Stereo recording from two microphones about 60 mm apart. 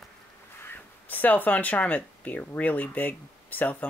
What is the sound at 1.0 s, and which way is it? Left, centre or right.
Speech, left.